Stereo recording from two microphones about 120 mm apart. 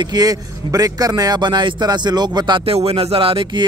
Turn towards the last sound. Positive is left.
turn(degrees=-45)  # may be behind; listen again after turning